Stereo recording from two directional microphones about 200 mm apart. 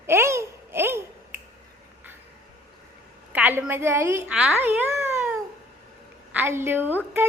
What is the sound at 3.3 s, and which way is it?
A woman's voice, 10° right (ahead or behind).